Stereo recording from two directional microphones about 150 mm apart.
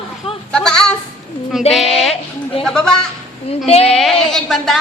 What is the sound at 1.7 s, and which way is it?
A woman's voice, centre (ahead or behind).